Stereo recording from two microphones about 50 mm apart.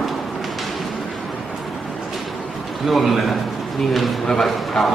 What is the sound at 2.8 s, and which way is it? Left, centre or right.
A man's voice, centre.